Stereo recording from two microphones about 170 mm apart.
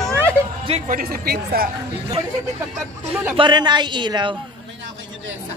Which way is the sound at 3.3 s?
25° right (ahead or behind).